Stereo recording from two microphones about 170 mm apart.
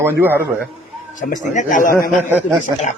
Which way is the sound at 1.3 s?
50° left (ahead or behind).